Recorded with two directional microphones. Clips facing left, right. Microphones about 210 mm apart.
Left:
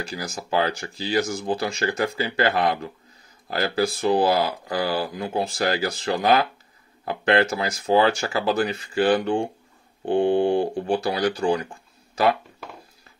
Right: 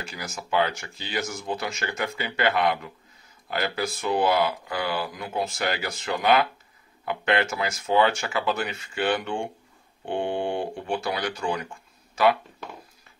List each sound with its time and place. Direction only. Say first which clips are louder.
0.0 s speech: left 5 dB; 35° left (ahead or behind)